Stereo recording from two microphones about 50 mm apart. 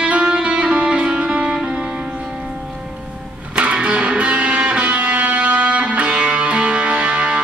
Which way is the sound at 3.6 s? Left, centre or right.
Right.